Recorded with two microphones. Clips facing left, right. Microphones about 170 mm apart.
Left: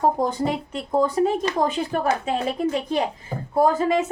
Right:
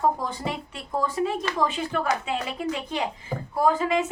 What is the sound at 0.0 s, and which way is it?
A woman's voice, 45° left (ahead or behind).